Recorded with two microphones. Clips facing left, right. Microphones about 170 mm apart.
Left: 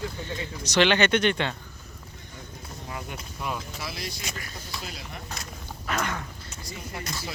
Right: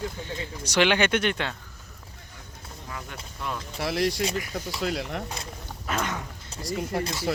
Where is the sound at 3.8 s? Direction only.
70° right (ahead or behind).